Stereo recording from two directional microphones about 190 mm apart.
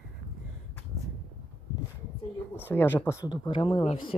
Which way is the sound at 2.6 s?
10° left (ahead or behind).